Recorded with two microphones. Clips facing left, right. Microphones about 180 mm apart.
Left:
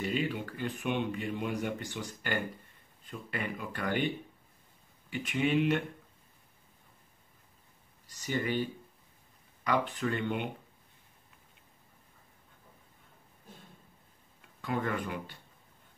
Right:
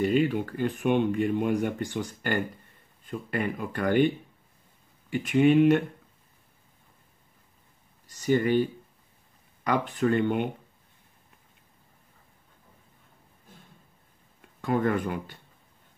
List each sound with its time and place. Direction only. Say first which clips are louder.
0.0 s speech: right 9 dB; 50° right (ahead or behind)
5.1 s speech: right 9 dB; 45° right (ahead or behind)
9.7 s speech: right 6 dB; 45° right (ahead or behind)
14.6 s speech: right 8 dB; 45° right (ahead or behind)